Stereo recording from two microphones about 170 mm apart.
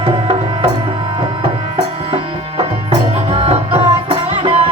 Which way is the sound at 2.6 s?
35° right (ahead or behind).